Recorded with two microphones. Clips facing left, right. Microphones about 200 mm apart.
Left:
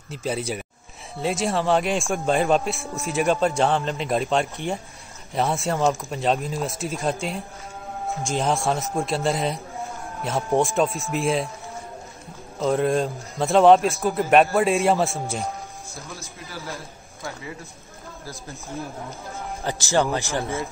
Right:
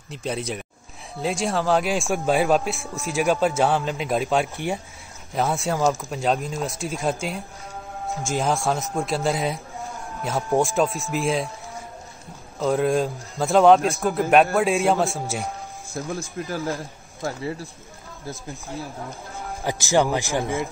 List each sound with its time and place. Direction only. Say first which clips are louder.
0.1 s a man's voice: left 1 dB; centre (ahead or behind)
12.5 s a man's voice: even; centre (ahead or behind)
15.9 s speech: right 9 dB; 50° right (ahead or behind)
19.6 s speech: right 2 dB; 15° right (ahead or behind)